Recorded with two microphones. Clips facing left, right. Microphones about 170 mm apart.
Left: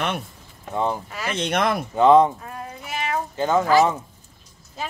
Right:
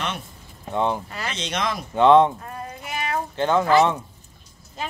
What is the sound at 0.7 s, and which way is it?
Speech, centre (ahead or behind).